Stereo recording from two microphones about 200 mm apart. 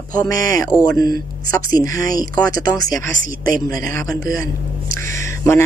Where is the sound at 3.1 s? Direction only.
45° right (ahead or behind).